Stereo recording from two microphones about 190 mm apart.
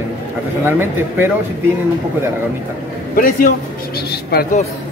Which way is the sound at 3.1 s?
45° left (ahead or behind).